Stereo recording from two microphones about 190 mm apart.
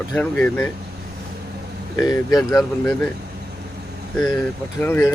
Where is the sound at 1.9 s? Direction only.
20° left (ahead or behind).